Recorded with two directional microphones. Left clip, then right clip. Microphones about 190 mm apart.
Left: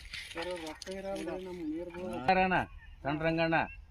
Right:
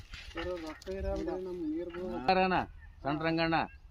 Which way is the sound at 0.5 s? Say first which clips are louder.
Even; 35° left (ahead or behind).